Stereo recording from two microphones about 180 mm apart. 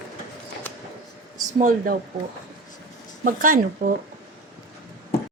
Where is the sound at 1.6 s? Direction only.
50° right (ahead or behind).